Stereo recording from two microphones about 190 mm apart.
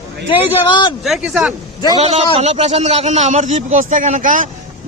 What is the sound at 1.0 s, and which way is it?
Speech, centre (ahead or behind).